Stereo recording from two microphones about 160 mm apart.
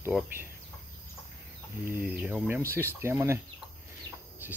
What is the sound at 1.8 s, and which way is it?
Speech, 10° right (ahead or behind).